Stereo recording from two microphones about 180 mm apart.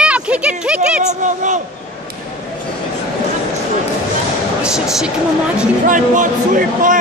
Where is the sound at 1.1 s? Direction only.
45° right (ahead or behind).